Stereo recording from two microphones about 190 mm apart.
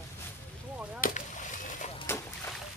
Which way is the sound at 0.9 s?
45° left (ahead or behind).